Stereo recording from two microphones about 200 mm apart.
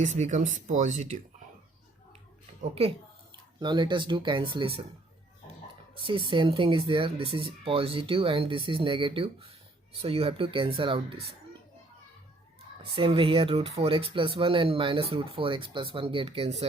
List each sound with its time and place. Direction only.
0.0 s speech: 35° right (ahead or behind)
2.6 s speech: 30° right (ahead or behind)
6.1 s speech: 25° right (ahead or behind)
13.0 s speech: 25° right (ahead or behind)